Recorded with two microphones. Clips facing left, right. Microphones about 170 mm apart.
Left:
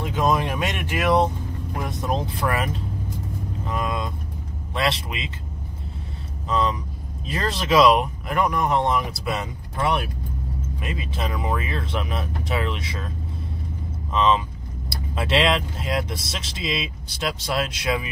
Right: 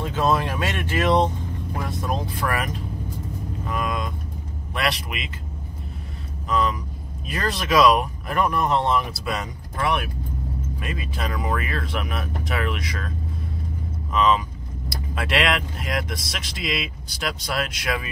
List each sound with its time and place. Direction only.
0.0 s speech: 15° left (ahead or behind)
1.8 s speech: 20° left (ahead or behind)
3.6 s vehicle: 25° left (ahead or behind)
4.7 s speech: 25° left (ahead or behind)
6.5 s speech: 25° left (ahead or behind)
14.1 s speech: 25° left (ahead or behind)